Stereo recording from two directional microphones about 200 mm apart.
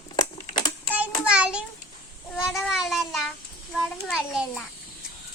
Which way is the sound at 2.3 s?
Centre (ahead or behind).